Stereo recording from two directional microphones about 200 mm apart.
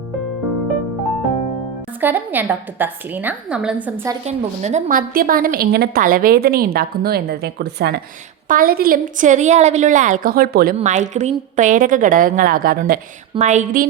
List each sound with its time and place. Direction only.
2.0 s a woman's voice: 10° right (ahead or behind)
4.3 s a woman's voice: 35° right (ahead or behind)
10.8 s a woman's voice: 35° right (ahead or behind)
13.3 s a woman's voice: 35° right (ahead or behind)